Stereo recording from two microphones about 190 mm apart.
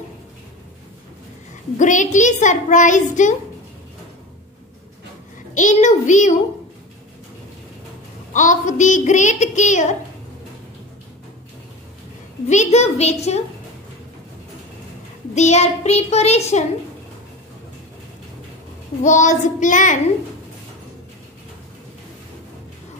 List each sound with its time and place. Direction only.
1.8 s a child's voice: 40° left (ahead or behind)
5.5 s a child's voice: 40° left (ahead or behind)
8.3 s a child's voice: 40° left (ahead or behind)
12.4 s a child's voice: 35° left (ahead or behind)
15.3 s a child's voice: 35° left (ahead or behind)
19.0 s a child's voice: 40° left (ahead or behind)